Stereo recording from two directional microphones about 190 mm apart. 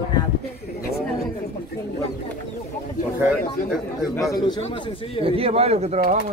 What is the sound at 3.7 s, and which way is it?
Speech, centre (ahead or behind).